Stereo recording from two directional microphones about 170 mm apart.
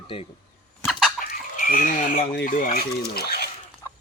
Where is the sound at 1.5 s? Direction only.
50° left (ahead or behind).